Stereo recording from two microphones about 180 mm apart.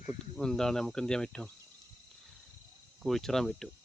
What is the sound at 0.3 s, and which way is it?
Speech, 5° left (ahead or behind).